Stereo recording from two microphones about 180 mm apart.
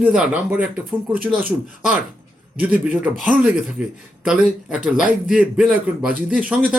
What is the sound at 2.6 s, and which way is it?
Speech, 10° right (ahead or behind).